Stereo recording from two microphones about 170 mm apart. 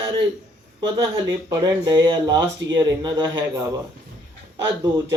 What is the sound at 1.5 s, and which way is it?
Speech, 25° right (ahead or behind).